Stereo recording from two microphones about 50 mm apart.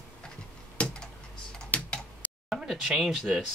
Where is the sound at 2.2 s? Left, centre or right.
Left.